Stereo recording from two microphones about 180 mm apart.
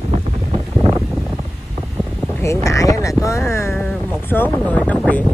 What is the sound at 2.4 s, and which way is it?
Speech, 20° left (ahead or behind).